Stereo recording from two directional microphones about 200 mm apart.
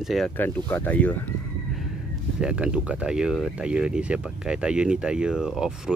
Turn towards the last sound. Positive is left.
turn(degrees=-5)  # may be behind; listen again after turning